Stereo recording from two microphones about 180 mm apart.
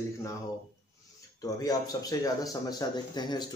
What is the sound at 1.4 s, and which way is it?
A man's voice, 20° left (ahead or behind).